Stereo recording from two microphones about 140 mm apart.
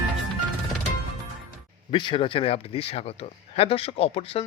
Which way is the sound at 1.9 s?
40° left (ahead or behind).